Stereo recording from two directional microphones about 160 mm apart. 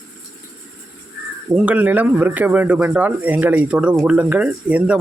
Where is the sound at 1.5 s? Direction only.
10° right (ahead or behind).